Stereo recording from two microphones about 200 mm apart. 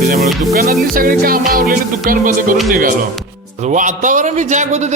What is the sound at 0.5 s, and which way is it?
Music, 45° right (ahead or behind).